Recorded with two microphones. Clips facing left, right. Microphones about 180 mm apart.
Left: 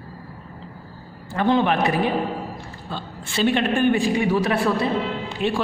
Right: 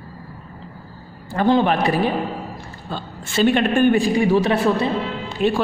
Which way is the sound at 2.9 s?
45° right (ahead or behind).